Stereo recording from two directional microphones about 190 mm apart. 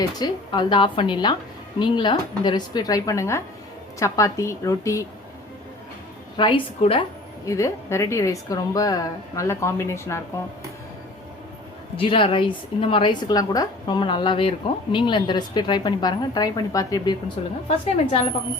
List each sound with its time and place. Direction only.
0.2 s a woman's voice: 25° left (ahead or behind)
6.3 s a woman's voice: 25° left (ahead or behind)
7.4 s a woman's voice: 15° left (ahead or behind)
11.9 s a woman's voice: 30° left (ahead or behind)
17.7 s a woman's voice: 30° left (ahead or behind)